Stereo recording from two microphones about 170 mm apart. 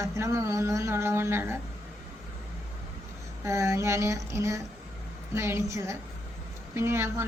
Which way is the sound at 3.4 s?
15° right (ahead or behind).